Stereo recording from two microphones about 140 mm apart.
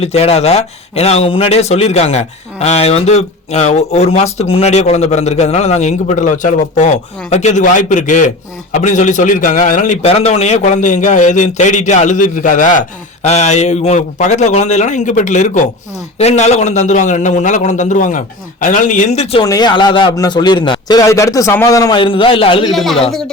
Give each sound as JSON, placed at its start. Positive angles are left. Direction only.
{"t": 0.0, "sound": "a man's voice", "side_deg": 45}
{"t": 10.1, "sound": "a man's voice", "side_deg": 50}
{"t": 13.2, "sound": "a man's voice", "side_deg": 55}
{"t": 19.4, "sound": "a man's voice", "side_deg": 30}
{"t": 22.7, "sound": "speech", "side_deg": 0}